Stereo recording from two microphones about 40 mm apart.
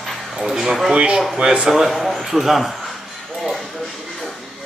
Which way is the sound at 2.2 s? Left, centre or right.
Centre.